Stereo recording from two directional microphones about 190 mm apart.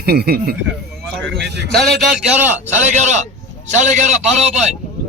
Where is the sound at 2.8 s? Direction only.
35° right (ahead or behind).